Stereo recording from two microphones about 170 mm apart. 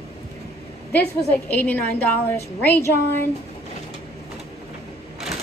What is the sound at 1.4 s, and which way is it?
A woman's voice, 10° left (ahead or behind).